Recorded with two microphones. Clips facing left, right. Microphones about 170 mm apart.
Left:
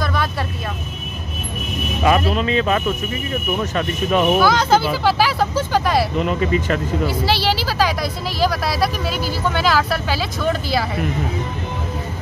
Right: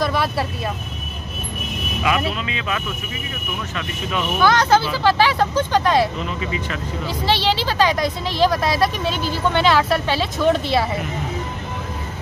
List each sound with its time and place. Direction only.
0.0 s vehicle: centre (ahead or behind)
2.0 s speech: 40° left (ahead or behind)
4.4 s speech: 10° left (ahead or behind)
6.2 s speech: 45° left (ahead or behind)
7.2 s speech: 5° left (ahead or behind)